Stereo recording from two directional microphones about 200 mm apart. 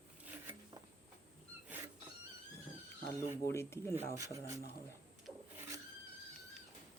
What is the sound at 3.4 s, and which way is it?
Speech, 15° left (ahead or behind).